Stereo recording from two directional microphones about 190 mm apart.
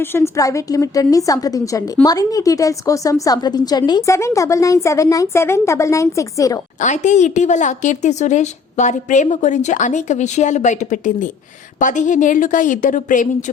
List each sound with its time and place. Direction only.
0.0 s a woman's voice: 15° left (ahead or behind)
6.7 s a woman's voice: 40° left (ahead or behind)